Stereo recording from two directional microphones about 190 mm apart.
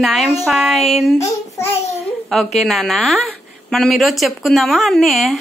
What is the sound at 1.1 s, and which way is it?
Speech, 15° left (ahead or behind).